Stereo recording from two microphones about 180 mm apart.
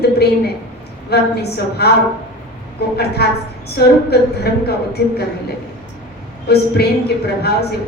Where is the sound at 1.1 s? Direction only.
65° left (ahead or behind).